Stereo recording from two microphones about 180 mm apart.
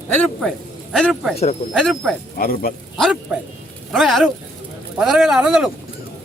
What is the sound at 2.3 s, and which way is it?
Speech, 55° left (ahead or behind).